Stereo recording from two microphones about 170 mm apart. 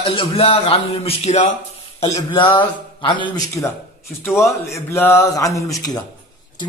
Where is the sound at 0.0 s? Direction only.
30° left (ahead or behind).